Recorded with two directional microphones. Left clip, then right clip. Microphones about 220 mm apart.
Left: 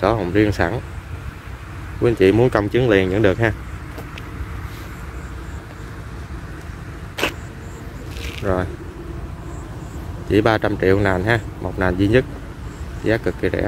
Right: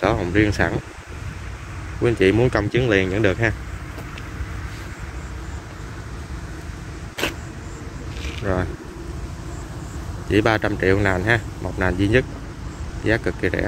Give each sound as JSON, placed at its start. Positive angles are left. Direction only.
{"t": 0.0, "sound": "speech", "side_deg": 10}
{"t": 2.0, "sound": "speech", "side_deg": 10}
{"t": 7.2, "sound": "vehicle", "side_deg": 15}
{"t": 8.2, "sound": "a sound", "side_deg": 5}
{"t": 10.3, "sound": "speech", "side_deg": 10}